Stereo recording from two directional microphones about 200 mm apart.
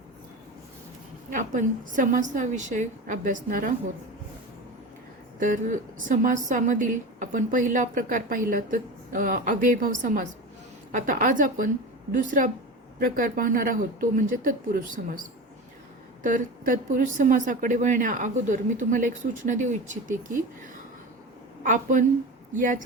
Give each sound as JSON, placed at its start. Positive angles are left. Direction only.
{"t": 1.3, "sound": "a woman's voice", "side_deg": -40}
{"t": 5.4, "sound": "a woman's voice", "side_deg": -40}
{"t": 21.6, "sound": "a woman's voice", "side_deg": -40}